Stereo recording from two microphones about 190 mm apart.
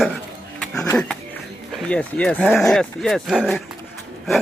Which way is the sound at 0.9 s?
5° left (ahead or behind).